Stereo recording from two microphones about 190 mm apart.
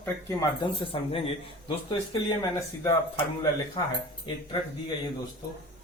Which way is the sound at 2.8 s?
15° left (ahead or behind).